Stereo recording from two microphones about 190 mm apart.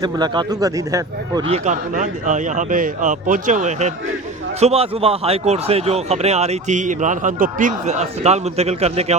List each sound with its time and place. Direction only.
0.0 s speech: 20° right (ahead or behind)
1.5 s a man's voice: 35° right (ahead or behind)